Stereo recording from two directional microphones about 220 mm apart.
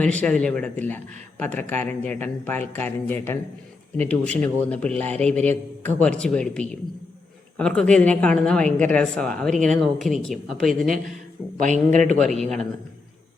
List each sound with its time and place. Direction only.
0.0 s a woman's voice: 5° left (ahead or behind)
11.5 s a man's voice: 35° right (ahead or behind)
12.2 s a woman's voice: centre (ahead or behind)